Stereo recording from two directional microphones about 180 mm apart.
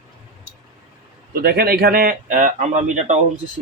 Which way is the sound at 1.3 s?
55° right (ahead or behind).